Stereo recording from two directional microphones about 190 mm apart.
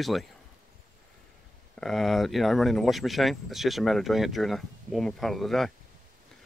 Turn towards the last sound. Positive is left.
turn(degrees=0)  # may be behind; listen again after turning